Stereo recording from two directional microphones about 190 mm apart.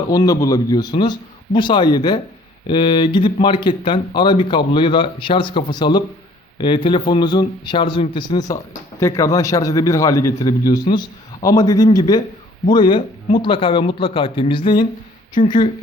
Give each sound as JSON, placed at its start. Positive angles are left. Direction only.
{"t": 0.1, "sound": "speech", "side_deg": 20}